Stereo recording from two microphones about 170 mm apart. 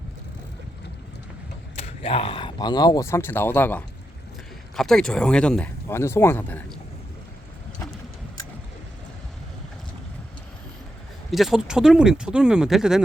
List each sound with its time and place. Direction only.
1.7 s speech: 35° left (ahead or behind); by 6.6 s 15° left (ahead or behind)
11.3 s speech: centre (ahead or behind)